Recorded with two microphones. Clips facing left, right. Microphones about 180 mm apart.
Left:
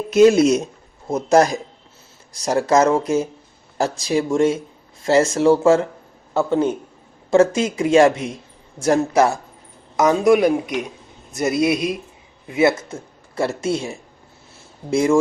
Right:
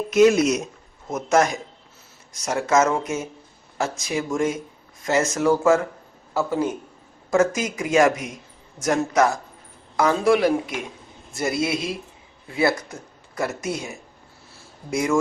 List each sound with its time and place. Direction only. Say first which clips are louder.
0.1 s speech: left 4 dB; 30° left (ahead or behind)
10.0 s a man's voice: left 4 dB; 20° left (ahead or behind)